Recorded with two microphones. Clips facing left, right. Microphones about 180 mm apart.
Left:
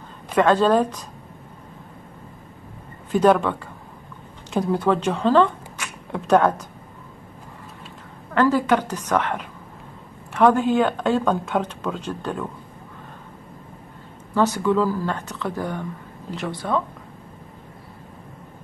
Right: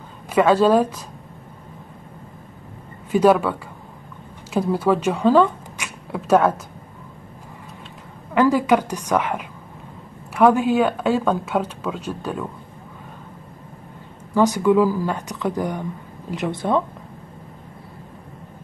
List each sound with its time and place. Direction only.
0.3 s speech: 10° right (ahead or behind)
3.1 s speech: 5° right (ahead or behind)
8.4 s speech: 10° right (ahead or behind)
14.3 s speech: 15° right (ahead or behind)